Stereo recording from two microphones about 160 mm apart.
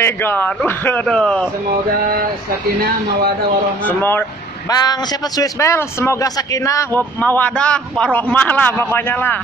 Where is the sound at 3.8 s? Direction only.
10° left (ahead or behind).